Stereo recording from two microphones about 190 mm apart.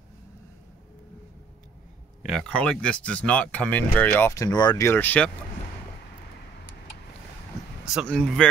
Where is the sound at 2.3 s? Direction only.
5° left (ahead or behind); by 4.9 s 20° left (ahead or behind).